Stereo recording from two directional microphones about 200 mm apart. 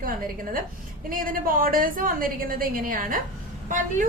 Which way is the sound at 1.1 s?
45° right (ahead or behind).